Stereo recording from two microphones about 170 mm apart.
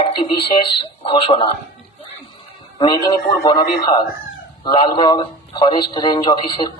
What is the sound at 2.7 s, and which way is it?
A man's voice, 25° left (ahead or behind).